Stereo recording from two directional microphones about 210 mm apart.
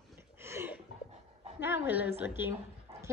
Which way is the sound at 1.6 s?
10° right (ahead or behind).